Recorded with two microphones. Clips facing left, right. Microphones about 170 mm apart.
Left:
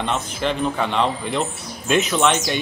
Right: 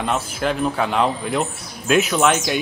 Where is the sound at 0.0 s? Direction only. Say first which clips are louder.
Right 1 dB; 5° right (ahead or behind).